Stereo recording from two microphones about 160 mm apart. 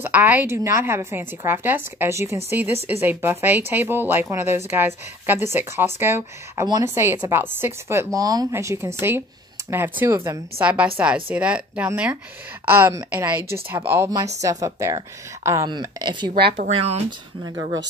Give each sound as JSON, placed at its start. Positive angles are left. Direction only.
{"t": 0.0, "sound": "a woman's voice", "side_deg": -10}
{"t": 16.3, "sound": "speech", "side_deg": -85}
{"t": 16.6, "sound": "speech", "side_deg": -40}